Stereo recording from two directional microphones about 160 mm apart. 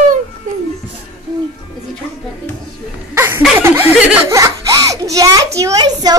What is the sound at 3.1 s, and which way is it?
Chuckle, 15° right (ahead or behind).